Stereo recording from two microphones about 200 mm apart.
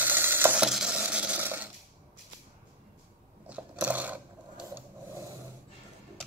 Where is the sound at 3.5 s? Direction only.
5° right (ahead or behind).